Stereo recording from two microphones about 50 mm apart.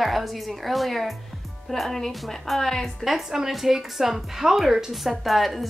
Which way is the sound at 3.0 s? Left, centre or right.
Centre.